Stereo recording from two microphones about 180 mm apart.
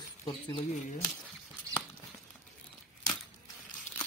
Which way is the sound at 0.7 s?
45° left (ahead or behind).